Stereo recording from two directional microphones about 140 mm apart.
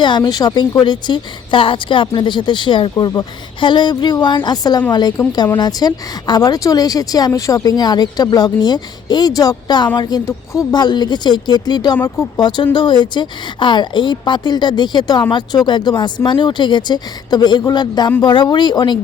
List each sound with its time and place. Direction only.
0.0 s a woman's voice: 30° left (ahead or behind)